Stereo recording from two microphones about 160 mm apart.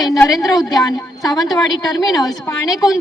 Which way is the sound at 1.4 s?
Centre (ahead or behind).